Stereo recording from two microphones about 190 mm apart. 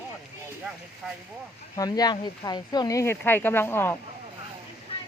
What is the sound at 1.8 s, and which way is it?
Speech, 20° left (ahead or behind).